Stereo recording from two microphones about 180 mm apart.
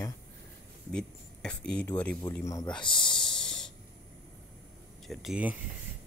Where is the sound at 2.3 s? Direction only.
15° left (ahead or behind).